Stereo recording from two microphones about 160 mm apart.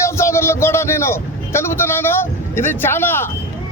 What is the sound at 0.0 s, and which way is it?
Vehicle, 15° left (ahead or behind).